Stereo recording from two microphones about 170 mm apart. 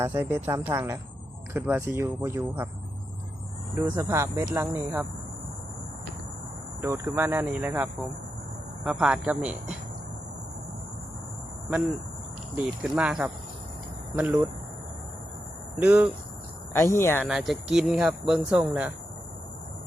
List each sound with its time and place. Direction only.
0.0 s speech: 15° right (ahead or behind)
3.8 s speech: 15° right (ahead or behind)
6.8 s speech: 15° right (ahead or behind)
12.8 s speech: 5° right (ahead or behind)
15.7 s speech: 10° right (ahead or behind)
16.7 s speech: 15° left (ahead or behind)
17.2 s speech: centre (ahead or behind)